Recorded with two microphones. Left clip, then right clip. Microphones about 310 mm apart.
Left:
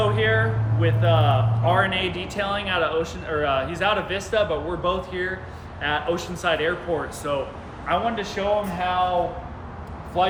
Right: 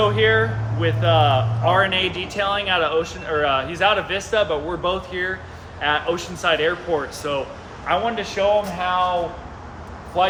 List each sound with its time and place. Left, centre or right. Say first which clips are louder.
0.0 s a man's voice: right 4 dB; centre